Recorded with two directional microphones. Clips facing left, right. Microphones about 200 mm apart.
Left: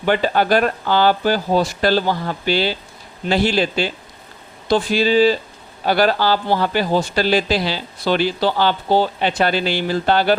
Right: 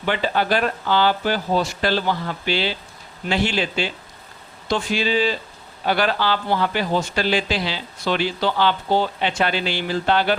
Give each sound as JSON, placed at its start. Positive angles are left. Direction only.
{"t": 0.0, "sound": "speech", "side_deg": 45}